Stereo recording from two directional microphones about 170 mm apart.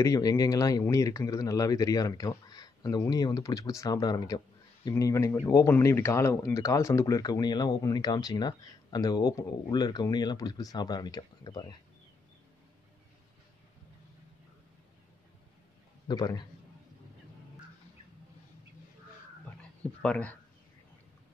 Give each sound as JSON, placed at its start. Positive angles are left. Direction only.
{"t": 0.0, "sound": "speech", "side_deg": 20}
{"t": 16.1, "sound": "speech", "side_deg": 25}
{"t": 20.0, "sound": "speech", "side_deg": 5}